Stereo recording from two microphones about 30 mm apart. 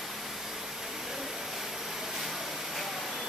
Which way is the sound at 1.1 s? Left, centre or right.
Centre.